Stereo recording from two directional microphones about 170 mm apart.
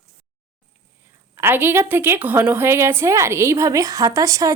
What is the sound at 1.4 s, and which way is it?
A woman's voice, 15° right (ahead or behind).